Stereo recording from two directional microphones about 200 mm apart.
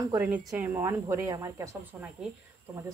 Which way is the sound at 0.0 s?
10° right (ahead or behind).